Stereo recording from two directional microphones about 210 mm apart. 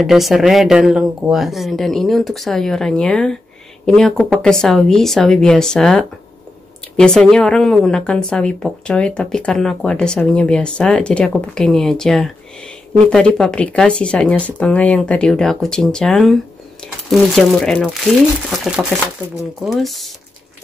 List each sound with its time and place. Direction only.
0.0 s a woman's voice: centre (ahead or behind)